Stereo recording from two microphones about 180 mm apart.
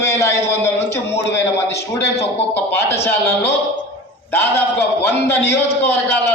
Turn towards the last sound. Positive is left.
turn(degrees=10)  # may be behind; listen again after turning